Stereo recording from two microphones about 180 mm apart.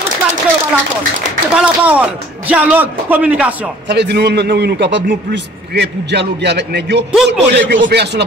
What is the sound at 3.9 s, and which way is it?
A man's voice, 65° right (ahead or behind).